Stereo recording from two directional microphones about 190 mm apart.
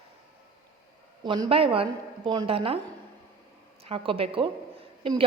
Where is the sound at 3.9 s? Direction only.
30° right (ahead or behind).